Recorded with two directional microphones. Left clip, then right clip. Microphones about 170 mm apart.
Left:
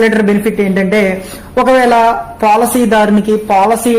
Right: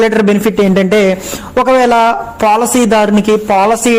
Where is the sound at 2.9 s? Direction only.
20° right (ahead or behind).